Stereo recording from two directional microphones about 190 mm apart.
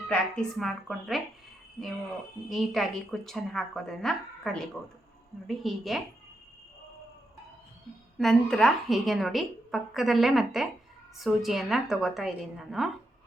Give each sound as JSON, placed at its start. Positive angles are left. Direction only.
{"t": 0.1, "sound": "a woman's voice", "side_deg": 0}
{"t": 2.5, "sound": "a woman's voice", "side_deg": 0}
{"t": 8.2, "sound": "a woman's voice", "side_deg": 0}